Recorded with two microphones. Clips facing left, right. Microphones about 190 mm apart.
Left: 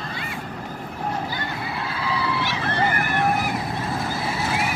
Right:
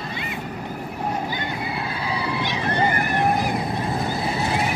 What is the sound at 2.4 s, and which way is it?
Boat, 15° right (ahead or behind).